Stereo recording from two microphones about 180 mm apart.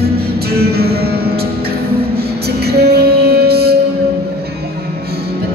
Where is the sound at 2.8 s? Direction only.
60° right (ahead or behind).